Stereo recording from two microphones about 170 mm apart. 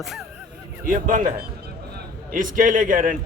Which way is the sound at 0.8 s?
50° right (ahead or behind).